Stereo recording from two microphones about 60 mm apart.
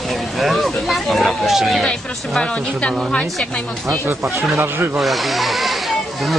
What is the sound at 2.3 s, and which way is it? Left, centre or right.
Speech, centre.